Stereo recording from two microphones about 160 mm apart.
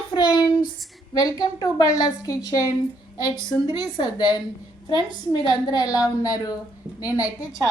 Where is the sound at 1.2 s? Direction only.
25° left (ahead or behind).